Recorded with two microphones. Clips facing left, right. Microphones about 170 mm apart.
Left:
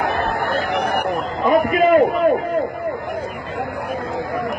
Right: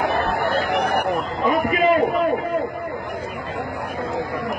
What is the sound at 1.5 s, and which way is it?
Speech, 45° left (ahead or behind).